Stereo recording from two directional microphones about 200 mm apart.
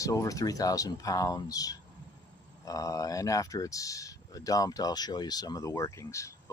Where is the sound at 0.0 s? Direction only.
15° left (ahead or behind).